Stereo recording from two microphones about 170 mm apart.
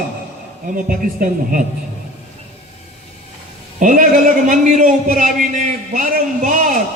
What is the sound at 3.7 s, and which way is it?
A man's voice, 50° right (ahead or behind).